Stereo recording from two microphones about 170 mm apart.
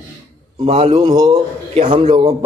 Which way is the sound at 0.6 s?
35° right (ahead or behind).